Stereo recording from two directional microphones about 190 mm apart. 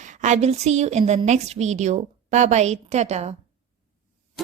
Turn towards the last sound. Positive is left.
turn(degrees=-35)  # may be behind; listen again after turning